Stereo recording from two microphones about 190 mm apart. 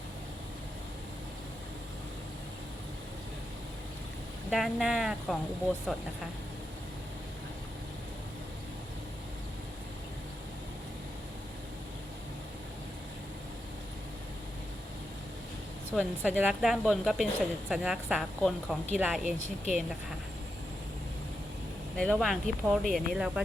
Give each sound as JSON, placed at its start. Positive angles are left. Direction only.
{"t": 4.5, "sound": "speech", "side_deg": 0}
{"t": 15.9, "sound": "speech", "side_deg": 5}
{"t": 16.4, "sound": "a woman's voice", "side_deg": -5}
{"t": 19.2, "sound": "speech", "side_deg": -40}
{"t": 21.9, "sound": "speech", "side_deg": 5}